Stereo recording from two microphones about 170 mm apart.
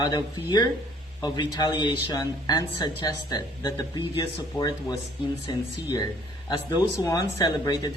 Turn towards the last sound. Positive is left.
turn(degrees=25)  # may be behind; listen again after turning